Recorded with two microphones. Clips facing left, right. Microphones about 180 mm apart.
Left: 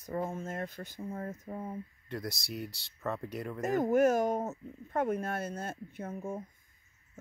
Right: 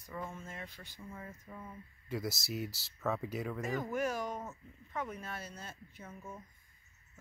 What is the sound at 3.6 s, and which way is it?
Speech, 45° left (ahead or behind).